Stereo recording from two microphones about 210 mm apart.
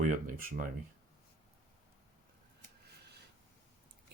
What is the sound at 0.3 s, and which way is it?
Speech, 40° right (ahead or behind).